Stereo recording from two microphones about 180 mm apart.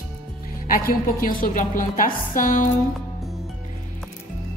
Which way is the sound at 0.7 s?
50° left (ahead or behind).